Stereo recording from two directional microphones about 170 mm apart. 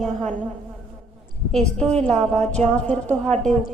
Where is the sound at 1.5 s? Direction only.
5° left (ahead or behind).